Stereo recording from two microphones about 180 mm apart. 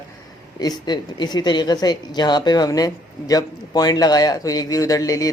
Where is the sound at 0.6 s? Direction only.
25° left (ahead or behind).